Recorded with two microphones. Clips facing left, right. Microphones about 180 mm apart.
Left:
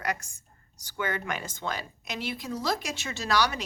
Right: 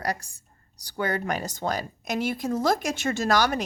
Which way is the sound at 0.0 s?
35° right (ahead or behind).